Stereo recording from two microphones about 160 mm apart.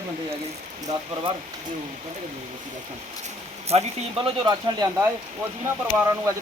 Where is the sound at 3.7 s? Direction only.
35° right (ahead or behind).